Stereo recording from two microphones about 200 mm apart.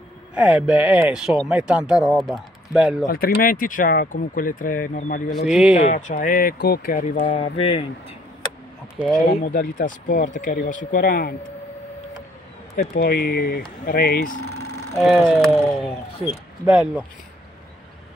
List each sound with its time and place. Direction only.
0.3 s speech: 5° right (ahead or behind)
3.1 s speech: 45° left (ahead or behind)
5.5 s speech: centre (ahead or behind)
5.8 s speech: 35° left (ahead or behind)
8.9 s speech: 5° right (ahead or behind)
9.3 s speech: 45° left (ahead or behind)
12.7 s speech: 50° left (ahead or behind)
15.0 s speech: 5° right (ahead or behind)
16.6 s speech: 5° right (ahead or behind)